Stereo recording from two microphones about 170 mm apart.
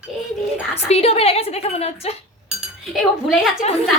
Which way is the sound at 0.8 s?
35° left (ahead or behind).